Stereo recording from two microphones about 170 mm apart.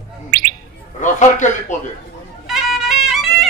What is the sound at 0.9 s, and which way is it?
Speech, 45° left (ahead or behind).